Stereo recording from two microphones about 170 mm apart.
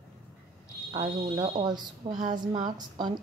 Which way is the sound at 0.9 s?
25° right (ahead or behind).